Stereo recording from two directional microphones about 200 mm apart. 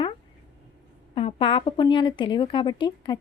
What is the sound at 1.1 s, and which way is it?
Speech, 25° left (ahead or behind).